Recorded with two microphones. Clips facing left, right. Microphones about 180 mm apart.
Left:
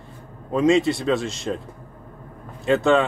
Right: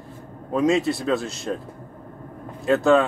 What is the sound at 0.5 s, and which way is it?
Speech, centre (ahead or behind).